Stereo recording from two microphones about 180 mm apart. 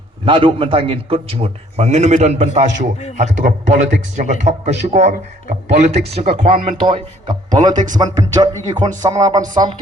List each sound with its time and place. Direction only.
0.3 s a man's voice: 30° right (ahead or behind)